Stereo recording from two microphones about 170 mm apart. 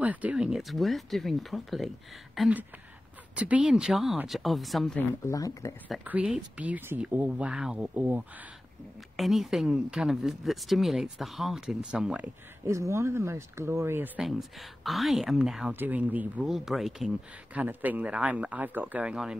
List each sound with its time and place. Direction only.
0.0 s speech: 10° right (ahead or behind)
5.2 s speech: 20° left (ahead or behind)
5.9 s speech: 5° right (ahead or behind)
12.6 s speech: 15° right (ahead or behind)